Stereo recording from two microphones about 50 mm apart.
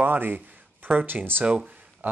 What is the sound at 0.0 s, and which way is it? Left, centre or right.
Speech, right.